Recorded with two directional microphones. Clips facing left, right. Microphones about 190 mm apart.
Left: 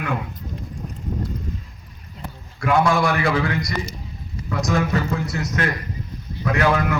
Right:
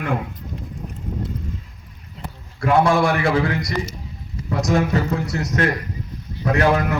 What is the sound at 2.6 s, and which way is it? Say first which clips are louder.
A man's voice: right 2 dB; 30° right (ahead or behind).